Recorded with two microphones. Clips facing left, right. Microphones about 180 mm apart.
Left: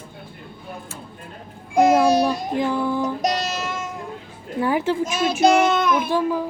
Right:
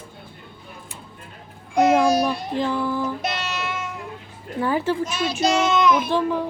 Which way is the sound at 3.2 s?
40° left (ahead or behind).